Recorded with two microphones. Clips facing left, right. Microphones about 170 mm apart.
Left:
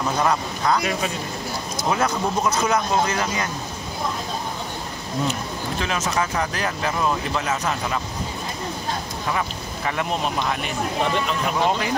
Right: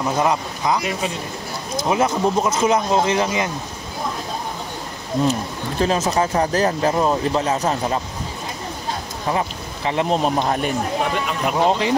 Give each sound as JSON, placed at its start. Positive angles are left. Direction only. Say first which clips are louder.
{"t": 0.2, "sound": "a man's voice", "louder": "right 1 dB", "side_deg": -15}
{"t": 5.3, "sound": "speech", "louder": "right 3 dB", "side_deg": -35}
{"t": 9.3, "sound": "speech", "louder": "right 4 dB", "side_deg": -25}
{"t": 11.5, "sound": "a man's voice", "louder": "right 5 dB", "side_deg": -25}